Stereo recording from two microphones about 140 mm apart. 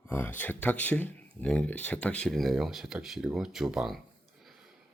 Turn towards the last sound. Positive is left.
turn(degrees=0)  # may be behind; listen again after turning